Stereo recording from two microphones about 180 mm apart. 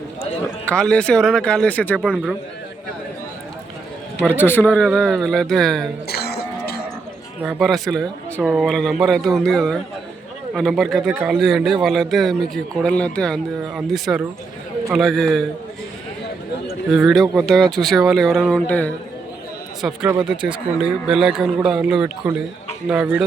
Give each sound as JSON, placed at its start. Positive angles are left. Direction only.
{"t": 0.6, "sound": "speech", "side_deg": 5}
{"t": 2.0, "sound": "speech", "side_deg": -5}
{"t": 4.4, "sound": "a man's voice", "side_deg": 10}
{"t": 6.1, "sound": "cough", "side_deg": 60}
{"t": 7.4, "sound": "speech", "side_deg": 0}
{"t": 16.9, "sound": "speech", "side_deg": 0}
{"t": 19.8, "sound": "speech", "side_deg": -5}
{"t": 20.3, "sound": "speech", "side_deg": -25}
{"t": 20.8, "sound": "a man's voice", "side_deg": -5}